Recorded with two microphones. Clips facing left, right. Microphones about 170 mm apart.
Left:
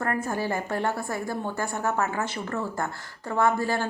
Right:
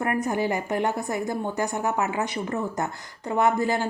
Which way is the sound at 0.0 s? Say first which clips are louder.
Right 3 dB; 15° right (ahead or behind).